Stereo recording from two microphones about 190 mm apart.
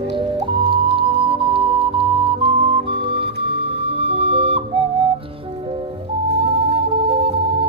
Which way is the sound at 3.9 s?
30° right (ahead or behind).